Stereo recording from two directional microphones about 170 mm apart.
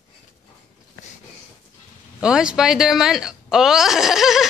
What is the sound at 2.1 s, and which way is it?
A woman's voice, 5° right (ahead or behind).